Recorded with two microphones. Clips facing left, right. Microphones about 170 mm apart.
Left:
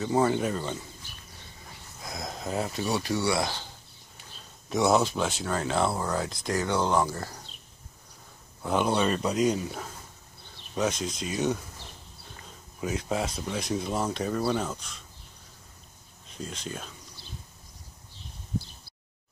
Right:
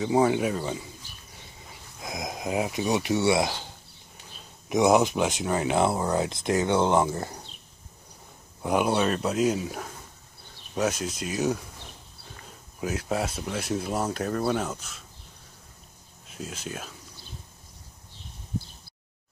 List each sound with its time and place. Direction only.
0.0 s speech: 10° right (ahead or behind)
2.0 s speech: 20° right (ahead or behind)
4.6 s speech: 15° right (ahead or behind)
8.6 s speech: 10° right (ahead or behind)
16.3 s speech: 5° right (ahead or behind)